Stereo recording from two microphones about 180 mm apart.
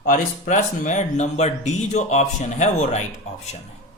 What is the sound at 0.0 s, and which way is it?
Speech, 45° left (ahead or behind).